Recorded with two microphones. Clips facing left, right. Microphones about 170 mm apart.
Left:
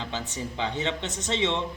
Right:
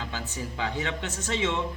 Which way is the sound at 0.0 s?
25° left (ahead or behind).